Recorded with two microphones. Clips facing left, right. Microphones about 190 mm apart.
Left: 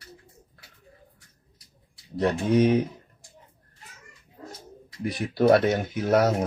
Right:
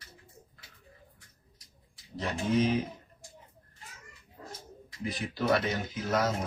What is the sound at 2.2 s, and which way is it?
Speech, 65° left (ahead or behind).